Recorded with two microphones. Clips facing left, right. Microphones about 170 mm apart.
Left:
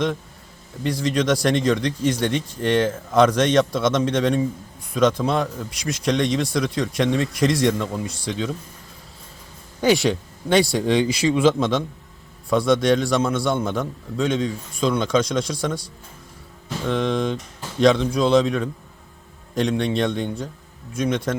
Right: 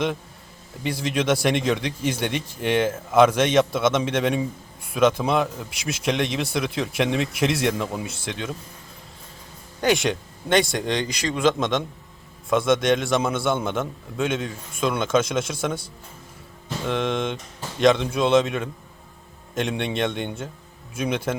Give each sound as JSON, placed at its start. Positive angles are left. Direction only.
{"t": 0.8, "sound": "a man's voice", "side_deg": -10}
{"t": 9.8, "sound": "a man's voice", "side_deg": 0}
{"t": 16.8, "sound": "a man's voice", "side_deg": -5}